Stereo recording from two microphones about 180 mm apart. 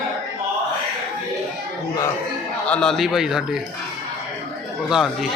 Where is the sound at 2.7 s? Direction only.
5° left (ahead or behind).